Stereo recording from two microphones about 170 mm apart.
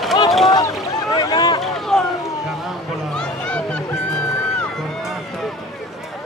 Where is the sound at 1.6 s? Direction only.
Centre (ahead or behind).